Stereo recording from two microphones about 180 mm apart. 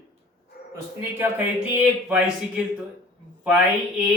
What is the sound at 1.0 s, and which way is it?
Speech, 10° right (ahead or behind).